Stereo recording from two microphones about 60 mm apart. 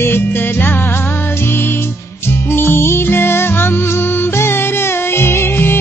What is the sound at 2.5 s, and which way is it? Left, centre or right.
Music, left.